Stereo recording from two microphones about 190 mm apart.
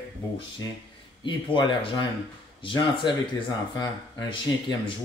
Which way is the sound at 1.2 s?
25° left (ahead or behind).